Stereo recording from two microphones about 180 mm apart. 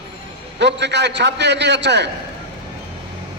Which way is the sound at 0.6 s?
70° right (ahead or behind).